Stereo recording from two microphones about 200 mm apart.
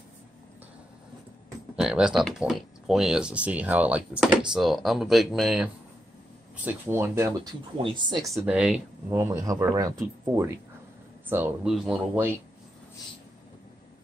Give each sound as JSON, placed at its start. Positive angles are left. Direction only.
{"t": 1.8, "sound": "speech", "side_deg": -5}
{"t": 7.8, "sound": "speech", "side_deg": -25}
{"t": 8.4, "sound": "speech", "side_deg": -5}
{"t": 9.1, "sound": "speech", "side_deg": -15}